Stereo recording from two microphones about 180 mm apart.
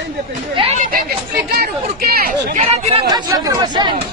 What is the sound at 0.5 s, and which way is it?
Speech, 35° right (ahead or behind).